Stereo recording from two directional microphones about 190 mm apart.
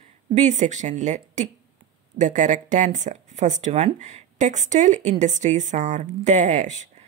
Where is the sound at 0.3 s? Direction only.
40° right (ahead or behind).